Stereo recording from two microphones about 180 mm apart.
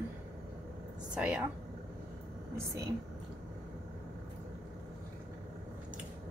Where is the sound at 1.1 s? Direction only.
5° right (ahead or behind).